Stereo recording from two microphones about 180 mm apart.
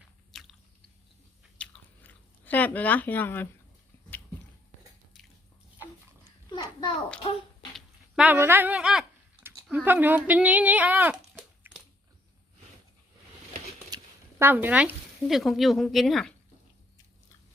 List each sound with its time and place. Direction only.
0.3 s biting: centre (ahead or behind)
1.5 s chewing: 10° left (ahead or behind)
6.6 s a sound: 25° left (ahead or behind)
7.8 s speech: 5° right (ahead or behind)
13.9 s speech: 15° right (ahead or behind)